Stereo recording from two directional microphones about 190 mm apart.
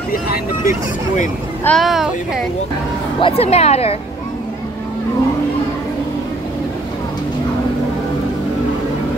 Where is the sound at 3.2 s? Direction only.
30° left (ahead or behind).